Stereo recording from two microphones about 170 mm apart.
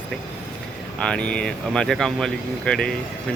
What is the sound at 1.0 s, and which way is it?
Speech, 5° left (ahead or behind).